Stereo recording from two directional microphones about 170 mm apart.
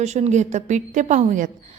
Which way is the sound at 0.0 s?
40° right (ahead or behind).